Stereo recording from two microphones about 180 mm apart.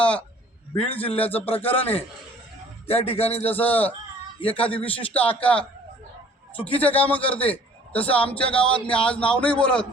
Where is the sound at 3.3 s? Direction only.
10° left (ahead or behind).